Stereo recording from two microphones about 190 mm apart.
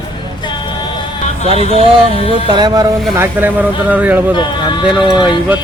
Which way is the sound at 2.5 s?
20° right (ahead or behind).